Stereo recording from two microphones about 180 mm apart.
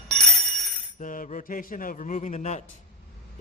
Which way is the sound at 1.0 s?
45° left (ahead or behind).